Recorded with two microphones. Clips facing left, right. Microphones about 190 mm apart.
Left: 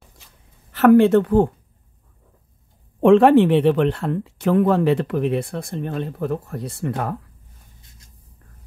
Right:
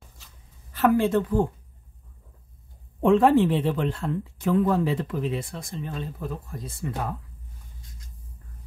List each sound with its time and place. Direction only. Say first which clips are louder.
0.7 s a woman's voice: left 9 dB; 70° left (ahead or behind)
3.0 s speech: left 6 dB; 80° left